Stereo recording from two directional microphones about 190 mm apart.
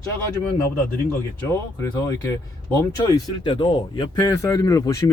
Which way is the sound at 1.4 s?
15° left (ahead or behind).